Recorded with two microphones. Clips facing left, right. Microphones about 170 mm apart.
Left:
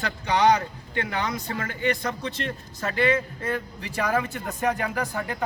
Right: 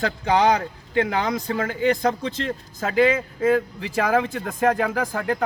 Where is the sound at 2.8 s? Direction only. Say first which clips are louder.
Right 4 dB; 90° right.